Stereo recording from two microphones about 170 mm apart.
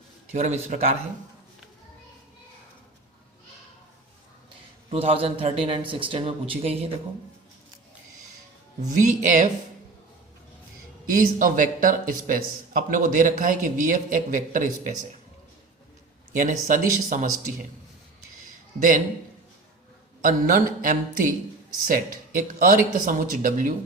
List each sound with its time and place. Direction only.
0.3 s speech: 45° right (ahead or behind)
4.9 s a man's voice: 35° right (ahead or behind)
9.0 s speech: 50° right (ahead or behind)
11.1 s speech: 55° right (ahead or behind)
16.3 s speech: 50° right (ahead or behind)
18.8 s speech: 50° right (ahead or behind)
20.2 s speech: 50° right (ahead or behind)